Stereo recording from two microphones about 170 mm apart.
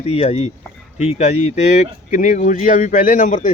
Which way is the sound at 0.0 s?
35° left (ahead or behind).